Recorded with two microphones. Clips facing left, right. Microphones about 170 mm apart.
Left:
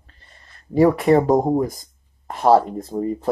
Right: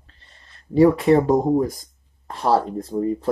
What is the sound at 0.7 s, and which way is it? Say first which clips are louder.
Speech: even; 40° left (ahead or behind).